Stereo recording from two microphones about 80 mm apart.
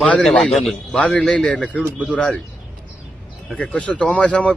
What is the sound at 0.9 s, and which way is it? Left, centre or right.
Speech, centre.